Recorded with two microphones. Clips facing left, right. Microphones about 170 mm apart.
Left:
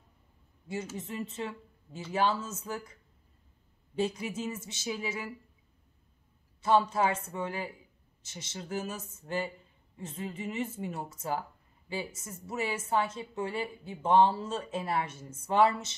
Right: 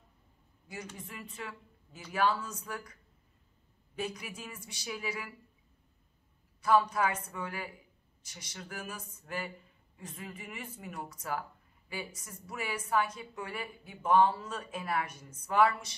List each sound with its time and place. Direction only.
0.9 s a woman's voice: 25° left (ahead or behind)
6.6 s a woman's voice: 25° left (ahead or behind)